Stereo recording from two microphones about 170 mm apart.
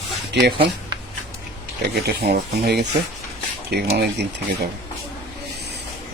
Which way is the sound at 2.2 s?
65° right (ahead or behind).